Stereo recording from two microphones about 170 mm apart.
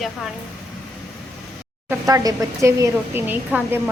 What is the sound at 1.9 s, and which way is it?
A woman's voice, 20° right (ahead or behind).